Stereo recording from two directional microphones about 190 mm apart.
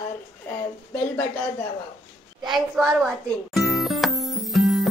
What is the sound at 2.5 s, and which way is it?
Music, centre (ahead or behind).